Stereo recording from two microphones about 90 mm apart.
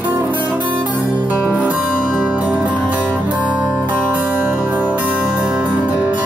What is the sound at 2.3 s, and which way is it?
Music, 15° right (ahead or behind).